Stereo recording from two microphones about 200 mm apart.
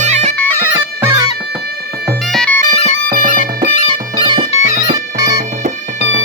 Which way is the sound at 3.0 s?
45° right (ahead or behind).